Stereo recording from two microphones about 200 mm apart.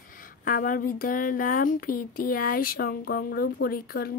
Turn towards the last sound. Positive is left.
turn(degrees=50)  # may be behind; listen again after turning